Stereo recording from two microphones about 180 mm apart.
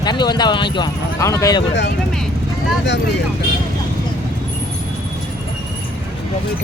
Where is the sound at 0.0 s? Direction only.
25° left (ahead or behind).